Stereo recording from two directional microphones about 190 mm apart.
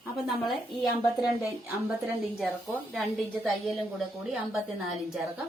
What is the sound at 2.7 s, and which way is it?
A woman's voice, 5° right (ahead or behind).